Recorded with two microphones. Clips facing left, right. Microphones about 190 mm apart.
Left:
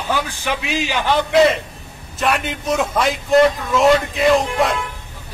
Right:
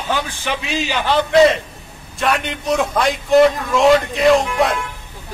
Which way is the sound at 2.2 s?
Centre (ahead or behind).